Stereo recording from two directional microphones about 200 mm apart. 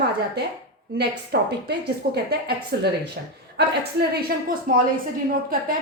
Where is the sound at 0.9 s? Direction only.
55° right (ahead or behind).